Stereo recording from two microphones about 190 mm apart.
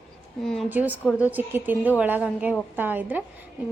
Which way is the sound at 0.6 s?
10° right (ahead or behind).